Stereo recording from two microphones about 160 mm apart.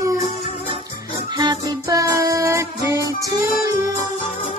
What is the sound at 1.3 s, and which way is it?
Music, 25° right (ahead or behind).